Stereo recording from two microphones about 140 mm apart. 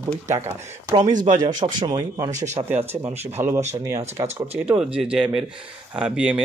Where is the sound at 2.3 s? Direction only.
55° right (ahead or behind).